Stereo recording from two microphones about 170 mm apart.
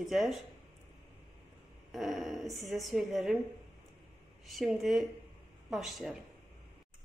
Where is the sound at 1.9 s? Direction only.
Centre (ahead or behind).